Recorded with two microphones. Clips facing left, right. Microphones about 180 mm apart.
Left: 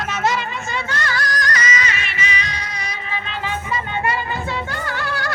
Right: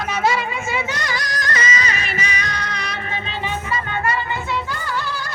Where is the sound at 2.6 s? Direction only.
65° right (ahead or behind).